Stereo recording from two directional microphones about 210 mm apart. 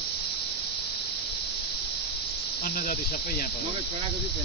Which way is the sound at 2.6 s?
40° left (ahead or behind).